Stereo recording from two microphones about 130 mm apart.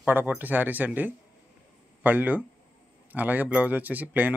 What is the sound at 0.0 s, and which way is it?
Speech, 15° right (ahead or behind).